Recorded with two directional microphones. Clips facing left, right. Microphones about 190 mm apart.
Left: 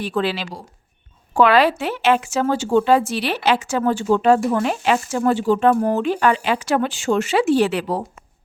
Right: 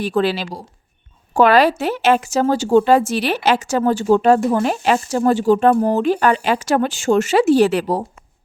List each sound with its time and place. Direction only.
0.0 s a woman's voice: 40° right (ahead or behind)